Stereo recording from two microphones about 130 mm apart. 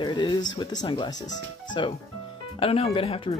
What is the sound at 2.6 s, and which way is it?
Speech, 50° left (ahead or behind).